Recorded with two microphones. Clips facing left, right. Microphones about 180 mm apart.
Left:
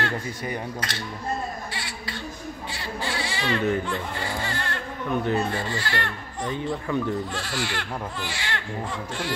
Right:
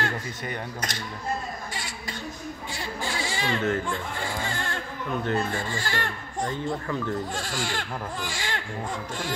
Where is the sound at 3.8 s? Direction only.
50° right (ahead or behind).